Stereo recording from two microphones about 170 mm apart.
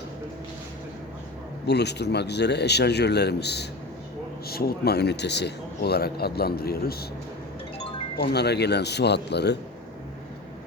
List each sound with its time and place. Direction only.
1.6 s a man's voice: 75° left (ahead or behind)
4.4 s speech: 65° left (ahead or behind)
8.2 s a man's voice: 75° left (ahead or behind)